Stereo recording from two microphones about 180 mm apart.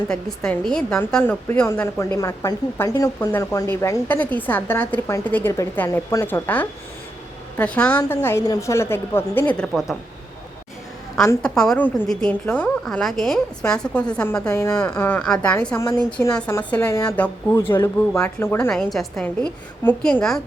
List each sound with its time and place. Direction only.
0.1 s a woman's voice: 5° left (ahead or behind)
11.4 s a woman's voice: 5° left (ahead or behind)
18.7 s a woman's voice: centre (ahead or behind)